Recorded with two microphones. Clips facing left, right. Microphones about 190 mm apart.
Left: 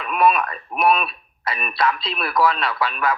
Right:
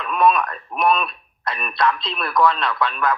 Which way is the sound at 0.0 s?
5° left (ahead or behind).